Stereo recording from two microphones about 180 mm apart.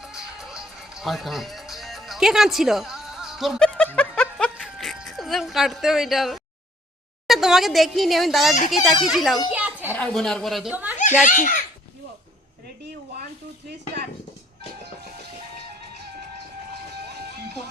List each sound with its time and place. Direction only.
0.0 s music: 5° right (ahead or behind)
4.5 s a sound: centre (ahead or behind)
7.3 s a woman's voice: centre (ahead or behind)
9.5 s a sound: 10° right (ahead or behind)
9.9 s a woman's voice: 5° left (ahead or behind)
11.2 s a child's voice: 45° left (ahead or behind)